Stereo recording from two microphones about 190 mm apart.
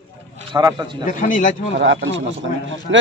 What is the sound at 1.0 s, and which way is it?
Speech, 45° left (ahead or behind).